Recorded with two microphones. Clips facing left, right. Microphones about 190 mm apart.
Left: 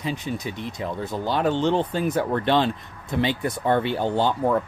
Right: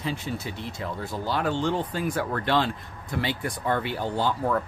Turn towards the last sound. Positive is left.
turn(degrees=25)  # may be behind; listen again after turning